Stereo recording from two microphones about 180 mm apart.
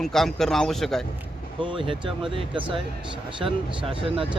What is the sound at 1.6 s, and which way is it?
Speech, 30° right (ahead or behind).